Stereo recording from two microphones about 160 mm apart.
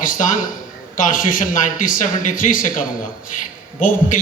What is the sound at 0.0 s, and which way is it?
A man's voice, 55° left (ahead or behind).